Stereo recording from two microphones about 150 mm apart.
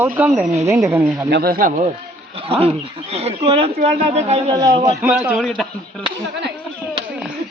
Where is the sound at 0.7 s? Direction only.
20° right (ahead or behind).